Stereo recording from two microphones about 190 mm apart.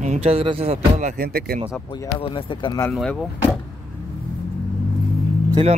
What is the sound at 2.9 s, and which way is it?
Speech, centre (ahead or behind).